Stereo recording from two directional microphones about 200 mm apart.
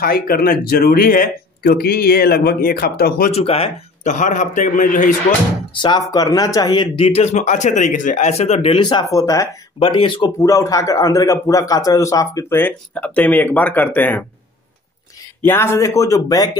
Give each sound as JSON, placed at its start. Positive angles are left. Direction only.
{"t": 0.0, "sound": "speech", "side_deg": 45}
{"t": 3.3, "sound": "a man's voice", "side_deg": 30}
{"t": 5.7, "sound": "a man's voice", "side_deg": 25}
{"t": 15.4, "sound": "a man's voice", "side_deg": 10}